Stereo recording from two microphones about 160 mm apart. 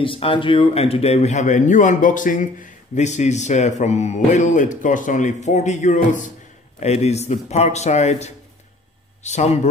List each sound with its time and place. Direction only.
0.0 s speech: 35° left (ahead or behind)